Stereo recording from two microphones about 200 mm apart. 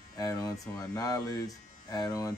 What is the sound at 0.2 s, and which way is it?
Speech, 15° left (ahead or behind).